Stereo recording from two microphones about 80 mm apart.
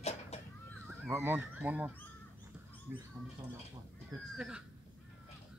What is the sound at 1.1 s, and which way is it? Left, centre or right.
Speech, right.